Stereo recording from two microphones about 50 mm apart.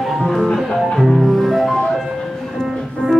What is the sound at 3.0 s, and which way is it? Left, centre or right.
Music, right.